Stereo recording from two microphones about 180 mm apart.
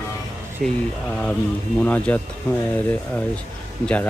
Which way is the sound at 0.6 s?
50° right (ahead or behind).